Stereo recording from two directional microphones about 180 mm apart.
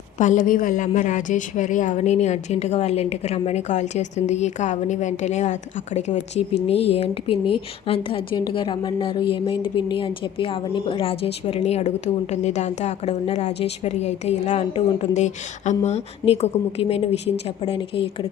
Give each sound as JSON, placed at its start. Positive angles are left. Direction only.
{"t": 0.2, "sound": "a woman's voice", "side_deg": 45}